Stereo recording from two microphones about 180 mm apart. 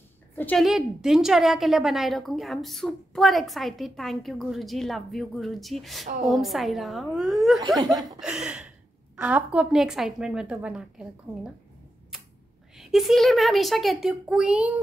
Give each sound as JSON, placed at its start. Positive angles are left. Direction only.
{"t": 0.4, "sound": "a woman's voice", "side_deg": 5}
{"t": 12.7, "sound": "a woman's voice", "side_deg": 0}